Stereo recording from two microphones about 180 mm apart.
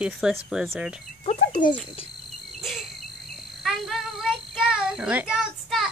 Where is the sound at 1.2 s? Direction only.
40° left (ahead or behind).